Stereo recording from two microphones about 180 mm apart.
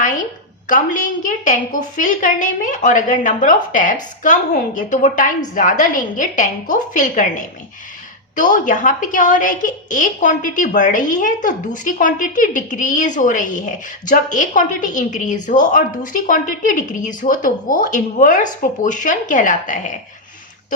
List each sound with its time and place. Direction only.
0.7 s a woman's voice: 45° left (ahead or behind)